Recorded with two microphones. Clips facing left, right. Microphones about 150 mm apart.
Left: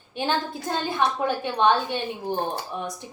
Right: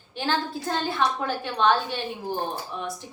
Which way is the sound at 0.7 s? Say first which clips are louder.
Left 1 dB; 15° left (ahead or behind).